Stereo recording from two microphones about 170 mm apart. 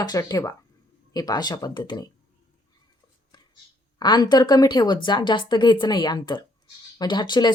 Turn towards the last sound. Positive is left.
turn(degrees=25)  # may be behind; listen again after turning